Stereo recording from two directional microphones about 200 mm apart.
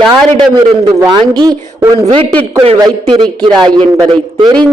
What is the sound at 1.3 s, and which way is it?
Speech, 20° right (ahead or behind).